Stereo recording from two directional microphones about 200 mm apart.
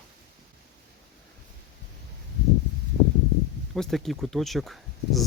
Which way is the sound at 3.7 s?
Centre (ahead or behind).